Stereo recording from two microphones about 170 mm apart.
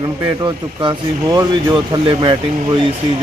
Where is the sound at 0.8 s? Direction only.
25° right (ahead or behind).